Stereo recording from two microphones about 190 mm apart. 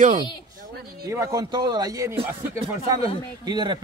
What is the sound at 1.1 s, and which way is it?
Speech, 20° right (ahead or behind).